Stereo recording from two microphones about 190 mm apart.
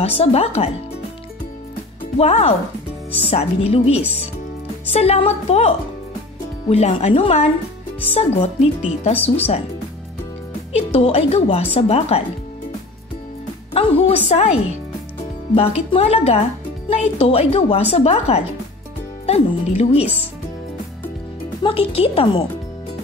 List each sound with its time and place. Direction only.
0.0 s a woman's voice: 30° left (ahead or behind)
2.1 s a woman's voice: 30° left (ahead or behind)
10.7 s a woman's voice: 35° left (ahead or behind)
13.7 s a woman's voice: 30° left (ahead or behind)
21.6 s speech: 30° left (ahead or behind)